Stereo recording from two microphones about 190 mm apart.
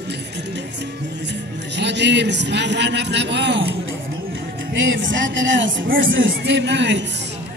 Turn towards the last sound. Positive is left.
turn(degrees=-65)  # may be behind; listen again after turning